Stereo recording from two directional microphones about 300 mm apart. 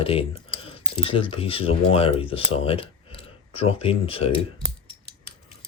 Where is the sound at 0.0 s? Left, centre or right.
Centre.